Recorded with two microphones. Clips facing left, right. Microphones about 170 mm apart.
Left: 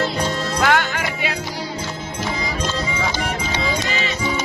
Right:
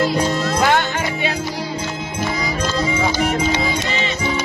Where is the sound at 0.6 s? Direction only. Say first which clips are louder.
Even; 20° right (ahead or behind).